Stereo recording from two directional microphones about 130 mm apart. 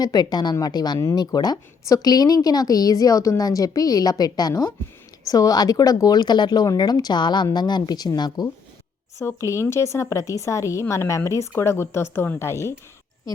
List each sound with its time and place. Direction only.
0.0 s a woman's voice: 30° left (ahead or behind)
9.1 s a woman's voice: 20° left (ahead or behind)